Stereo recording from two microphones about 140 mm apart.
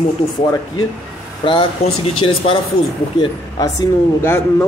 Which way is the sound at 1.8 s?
40° left (ahead or behind).